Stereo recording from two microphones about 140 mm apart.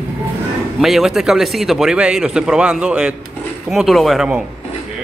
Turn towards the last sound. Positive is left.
turn(degrees=0)  # may be behind; listen again after turning